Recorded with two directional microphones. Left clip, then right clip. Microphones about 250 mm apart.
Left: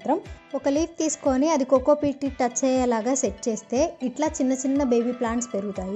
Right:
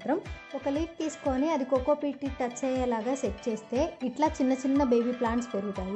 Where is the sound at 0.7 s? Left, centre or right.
Centre.